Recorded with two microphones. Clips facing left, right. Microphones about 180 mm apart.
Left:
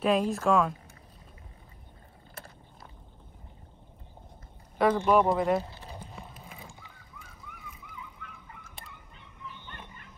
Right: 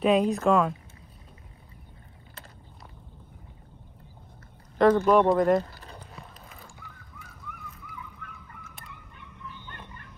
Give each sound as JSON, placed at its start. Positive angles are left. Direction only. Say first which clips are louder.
{"t": 0.0, "sound": "speech", "louder": "right 4 dB", "side_deg": 0}
{"t": 5.0, "sound": "speech", "louder": "right 3 dB", "side_deg": 5}
{"t": 7.2, "sound": "vehicle", "louder": "right 4 dB", "side_deg": -60}